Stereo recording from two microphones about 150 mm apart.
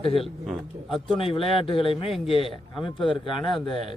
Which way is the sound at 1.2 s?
35° left (ahead or behind).